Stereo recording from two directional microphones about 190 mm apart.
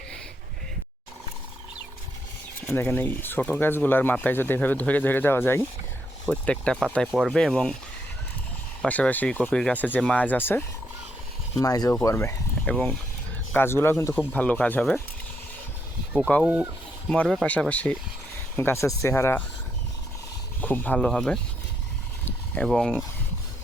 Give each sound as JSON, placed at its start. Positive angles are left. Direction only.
{"t": 2.6, "sound": "speech", "side_deg": 10}
{"t": 8.8, "sound": "speech", "side_deg": 10}
{"t": 16.4, "sound": "speech", "side_deg": -10}
{"t": 20.6, "sound": "speech", "side_deg": 10}
{"t": 22.5, "sound": "speech", "side_deg": 5}